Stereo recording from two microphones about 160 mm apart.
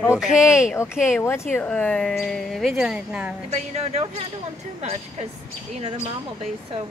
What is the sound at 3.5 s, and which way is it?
Speech, 40° right (ahead or behind).